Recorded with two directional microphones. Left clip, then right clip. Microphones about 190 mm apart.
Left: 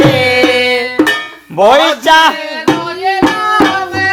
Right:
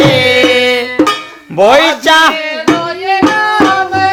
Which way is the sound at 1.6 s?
20° right (ahead or behind).